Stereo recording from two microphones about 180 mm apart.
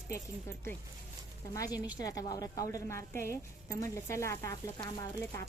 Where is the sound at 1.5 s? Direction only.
20° left (ahead or behind).